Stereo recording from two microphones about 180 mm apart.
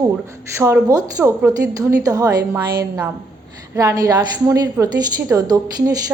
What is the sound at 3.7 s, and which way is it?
A woman's voice, 20° right (ahead or behind).